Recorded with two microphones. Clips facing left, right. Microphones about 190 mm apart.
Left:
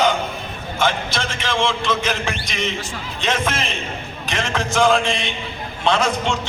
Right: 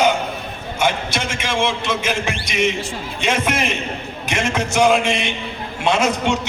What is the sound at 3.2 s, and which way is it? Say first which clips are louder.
A man's voice: right 2 dB; 10° right (ahead or behind).